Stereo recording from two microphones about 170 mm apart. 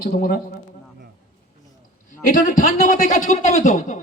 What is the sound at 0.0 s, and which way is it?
Speech, 55° left (ahead or behind).